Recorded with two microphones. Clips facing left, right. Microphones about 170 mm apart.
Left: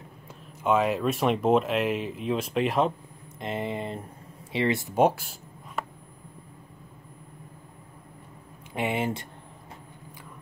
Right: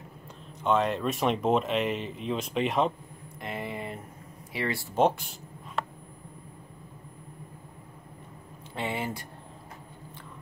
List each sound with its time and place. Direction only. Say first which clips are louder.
0.7 s speech: left 2 dB; 5° left (ahead or behind)
3.3 s a sound: left 5 dB; 20° left (ahead or behind)
4.5 s speech: left 6 dB; 20° left (ahead or behind)
8.7 s speech: left 5 dB; 20° left (ahead or behind)